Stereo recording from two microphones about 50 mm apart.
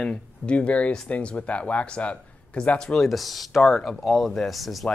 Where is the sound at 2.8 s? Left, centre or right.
Centre.